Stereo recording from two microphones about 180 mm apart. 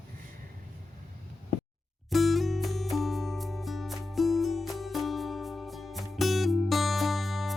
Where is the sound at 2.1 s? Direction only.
Centre (ahead or behind).